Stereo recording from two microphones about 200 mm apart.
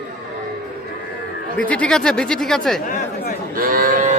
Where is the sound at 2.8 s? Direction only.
40° left (ahead or behind).